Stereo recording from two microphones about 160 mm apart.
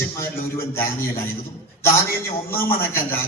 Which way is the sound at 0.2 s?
15° left (ahead or behind).